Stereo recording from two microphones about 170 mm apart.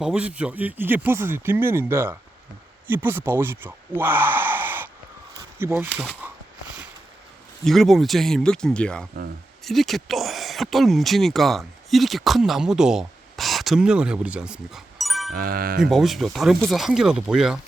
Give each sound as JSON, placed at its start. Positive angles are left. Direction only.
{"t": 0.0, "sound": "speech", "side_deg": -5}
{"t": 7.6, "sound": "speech", "side_deg": 0}
{"t": 15.3, "sound": "speech", "side_deg": -60}
{"t": 15.8, "sound": "speech", "side_deg": 0}